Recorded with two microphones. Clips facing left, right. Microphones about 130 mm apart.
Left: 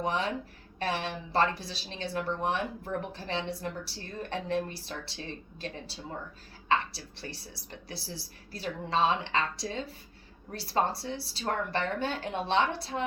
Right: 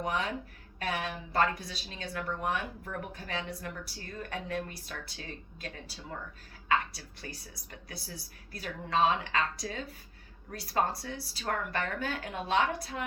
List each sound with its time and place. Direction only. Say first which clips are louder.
0.0 s a woman's voice: left 2 dB; 30° left (ahead or behind)